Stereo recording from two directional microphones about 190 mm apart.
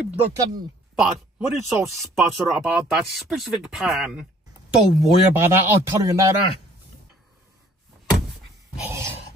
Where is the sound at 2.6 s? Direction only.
5° right (ahead or behind).